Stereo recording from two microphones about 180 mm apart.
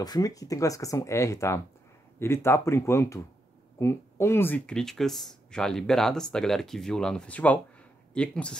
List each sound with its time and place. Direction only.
0.0 s speech: 20° left (ahead or behind); by 8.5 s 5° left (ahead or behind)